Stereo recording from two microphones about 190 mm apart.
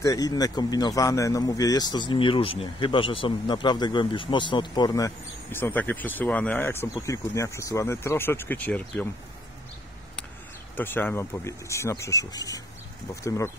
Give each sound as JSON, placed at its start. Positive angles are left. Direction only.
{"t": 0.0, "sound": "speech", "side_deg": 20}
{"t": 10.8, "sound": "speech", "side_deg": 10}